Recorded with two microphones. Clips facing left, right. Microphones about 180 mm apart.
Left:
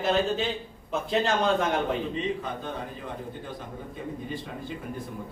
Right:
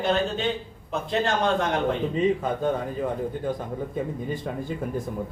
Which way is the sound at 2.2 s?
45° right (ahead or behind).